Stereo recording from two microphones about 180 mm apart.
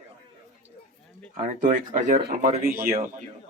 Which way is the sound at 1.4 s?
45° right (ahead or behind).